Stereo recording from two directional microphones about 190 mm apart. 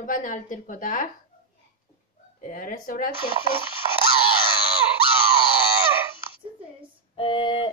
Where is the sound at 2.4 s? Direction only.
45° left (ahead or behind).